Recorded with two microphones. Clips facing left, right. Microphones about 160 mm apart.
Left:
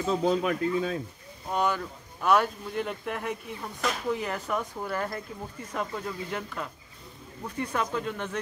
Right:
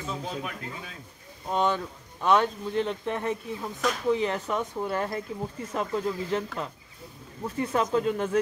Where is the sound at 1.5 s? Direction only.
25° right (ahead or behind).